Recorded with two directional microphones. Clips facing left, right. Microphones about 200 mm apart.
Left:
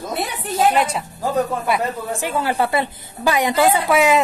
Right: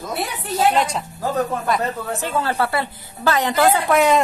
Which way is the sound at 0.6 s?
10° left (ahead or behind).